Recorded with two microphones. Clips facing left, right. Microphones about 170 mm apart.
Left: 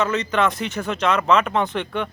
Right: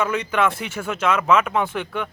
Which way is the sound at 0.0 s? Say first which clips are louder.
Left 1 dB; 10° right (ahead or behind).